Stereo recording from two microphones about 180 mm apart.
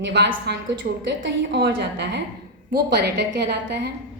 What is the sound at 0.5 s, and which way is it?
A woman's voice, 65° right (ahead or behind).